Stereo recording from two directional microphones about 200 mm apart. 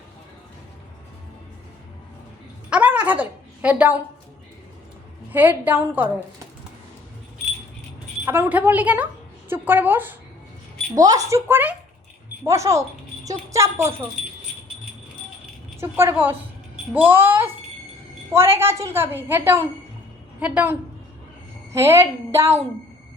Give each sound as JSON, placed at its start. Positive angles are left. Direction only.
{"t": 2.6, "sound": "a sound", "side_deg": -5}
{"t": 5.3, "sound": "a woman's voice", "side_deg": -10}
{"t": 8.2, "sound": "a woman's voice", "side_deg": -10}
{"t": 15.8, "sound": "a woman's voice", "side_deg": -10}